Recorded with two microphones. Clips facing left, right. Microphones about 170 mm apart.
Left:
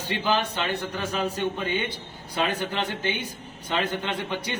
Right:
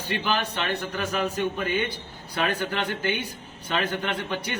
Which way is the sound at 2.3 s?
20° left (ahead or behind).